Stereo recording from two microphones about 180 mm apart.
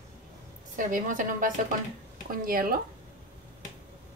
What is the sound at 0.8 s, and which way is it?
A woman's voice, 45° right (ahead or behind).